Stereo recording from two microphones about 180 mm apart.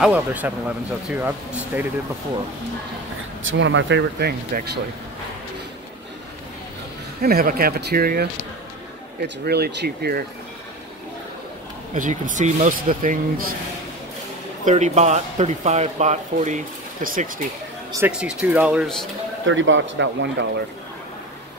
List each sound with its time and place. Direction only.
0.0 s speech: 10° right (ahead or behind)
3.4 s speech: 90° right; by 4.6 s 60° right (ahead or behind)
7.2 s speech: 55° right (ahead or behind)
9.4 s speech: 65° right (ahead or behind)
11.9 s speech: 45° right (ahead or behind)
14.6 s speech: 40° right (ahead or behind)
18.0 s speech: 5° right (ahead or behind)
19.4 s speech: 90° right